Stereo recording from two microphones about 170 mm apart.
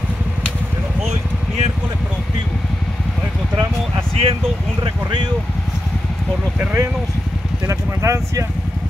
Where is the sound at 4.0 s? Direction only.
35° right (ahead or behind).